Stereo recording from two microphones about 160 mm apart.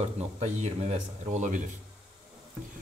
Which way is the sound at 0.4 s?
45° right (ahead or behind).